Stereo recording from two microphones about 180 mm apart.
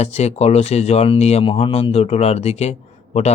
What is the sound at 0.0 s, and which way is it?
Speech, 35° left (ahead or behind).